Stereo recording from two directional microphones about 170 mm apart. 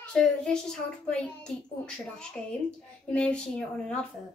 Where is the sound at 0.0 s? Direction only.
5° left (ahead or behind).